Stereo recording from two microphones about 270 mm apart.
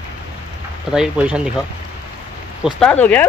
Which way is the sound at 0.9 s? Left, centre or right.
Centre.